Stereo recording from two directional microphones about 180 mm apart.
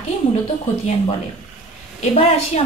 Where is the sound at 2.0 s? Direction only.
30° left (ahead or behind).